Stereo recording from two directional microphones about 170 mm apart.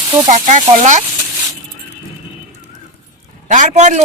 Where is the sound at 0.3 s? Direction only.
45° right (ahead or behind).